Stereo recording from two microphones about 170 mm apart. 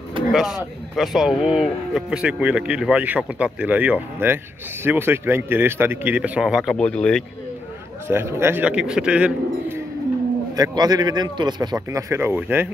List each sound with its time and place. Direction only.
0.3 s speech: centre (ahead or behind)
8.1 s speech: 15° right (ahead or behind)
10.5 s a man's voice: 25° right (ahead or behind)